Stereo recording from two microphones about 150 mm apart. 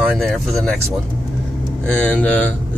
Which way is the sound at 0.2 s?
Centre (ahead or behind).